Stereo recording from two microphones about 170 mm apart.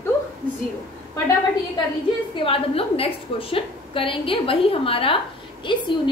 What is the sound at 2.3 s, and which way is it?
A woman's voice, 35° left (ahead or behind).